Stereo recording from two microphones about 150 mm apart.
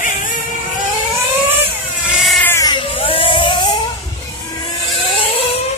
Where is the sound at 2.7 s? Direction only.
35° left (ahead or behind).